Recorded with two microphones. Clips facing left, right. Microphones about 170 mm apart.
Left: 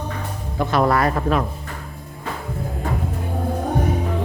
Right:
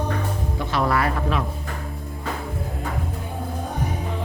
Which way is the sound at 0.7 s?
45° left (ahead or behind).